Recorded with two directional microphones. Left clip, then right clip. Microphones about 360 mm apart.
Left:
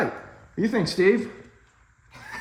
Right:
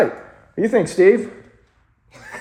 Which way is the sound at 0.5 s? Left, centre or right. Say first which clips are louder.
Right 8 dB; centre.